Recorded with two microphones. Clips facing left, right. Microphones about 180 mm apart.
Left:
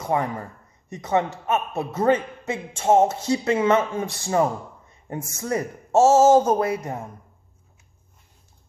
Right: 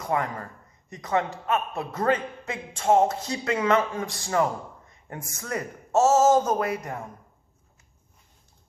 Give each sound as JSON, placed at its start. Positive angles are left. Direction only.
{"t": 0.0, "sound": "speech", "side_deg": 25}